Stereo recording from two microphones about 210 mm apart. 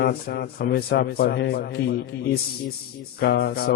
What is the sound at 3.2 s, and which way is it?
Speech, 45° left (ahead or behind).